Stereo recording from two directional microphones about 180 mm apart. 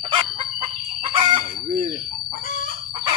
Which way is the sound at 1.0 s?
25° right (ahead or behind).